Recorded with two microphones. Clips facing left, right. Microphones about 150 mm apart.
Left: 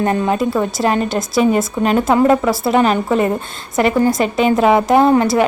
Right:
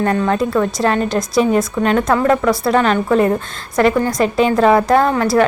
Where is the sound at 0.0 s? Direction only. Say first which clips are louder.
Even; 15° left (ahead or behind).